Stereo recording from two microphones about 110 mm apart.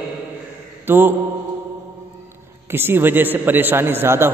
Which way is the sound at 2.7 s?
20° right (ahead or behind).